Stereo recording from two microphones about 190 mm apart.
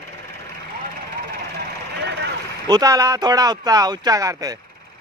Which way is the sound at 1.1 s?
60° right (ahead or behind).